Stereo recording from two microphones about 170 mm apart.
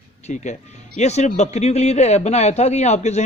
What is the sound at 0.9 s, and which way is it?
A man's voice, 40° left (ahead or behind).